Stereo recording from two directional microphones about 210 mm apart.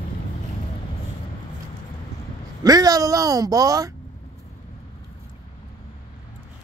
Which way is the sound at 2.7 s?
15° right (ahead or behind).